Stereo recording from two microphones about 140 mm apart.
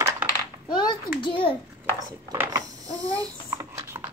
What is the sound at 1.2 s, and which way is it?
Speech, 35° left (ahead or behind).